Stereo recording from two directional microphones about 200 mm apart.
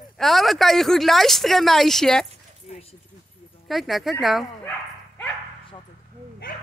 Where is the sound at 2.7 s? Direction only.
30° left (ahead or behind).